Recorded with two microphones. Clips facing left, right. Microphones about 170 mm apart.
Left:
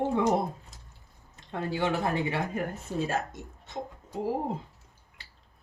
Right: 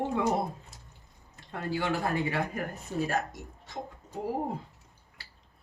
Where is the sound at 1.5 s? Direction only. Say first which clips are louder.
Left 2 dB; 20° left (ahead or behind).